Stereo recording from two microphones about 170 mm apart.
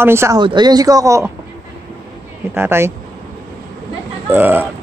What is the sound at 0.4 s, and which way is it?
Speech, 25° right (ahead or behind).